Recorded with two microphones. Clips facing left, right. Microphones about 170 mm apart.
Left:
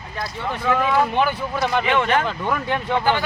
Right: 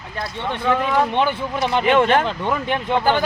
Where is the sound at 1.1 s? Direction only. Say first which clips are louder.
Right 1 dB; 25° right (ahead or behind).